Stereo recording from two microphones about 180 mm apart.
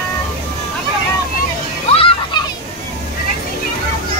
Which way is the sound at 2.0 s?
30° left (ahead or behind).